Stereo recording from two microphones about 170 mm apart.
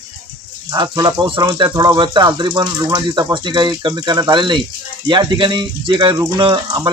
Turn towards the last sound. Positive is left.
turn(degrees=-25)  # may be behind; listen again after turning